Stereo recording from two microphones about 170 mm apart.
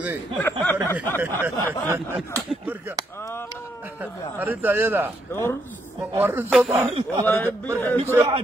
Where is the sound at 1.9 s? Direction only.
15° right (ahead or behind).